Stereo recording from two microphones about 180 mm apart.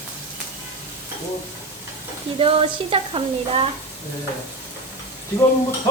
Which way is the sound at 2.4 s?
30° right (ahead or behind).